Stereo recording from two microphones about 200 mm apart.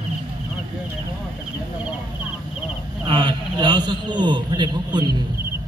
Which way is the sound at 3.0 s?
25° right (ahead or behind).